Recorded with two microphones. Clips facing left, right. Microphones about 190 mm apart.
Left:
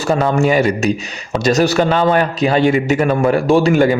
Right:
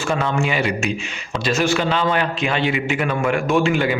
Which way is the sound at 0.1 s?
40° left (ahead or behind).